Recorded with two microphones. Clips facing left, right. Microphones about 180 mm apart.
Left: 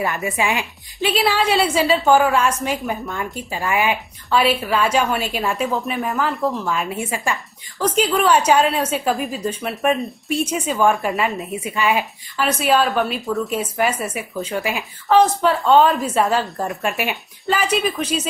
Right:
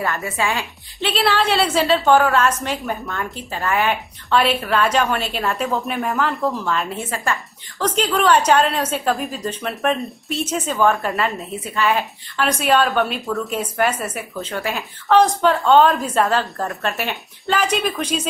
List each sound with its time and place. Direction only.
0.0 s a woman's voice: 20° left (ahead or behind); by 11.4 s centre (ahead or behind)
11.5 s a woman's voice: 15° left (ahead or behind)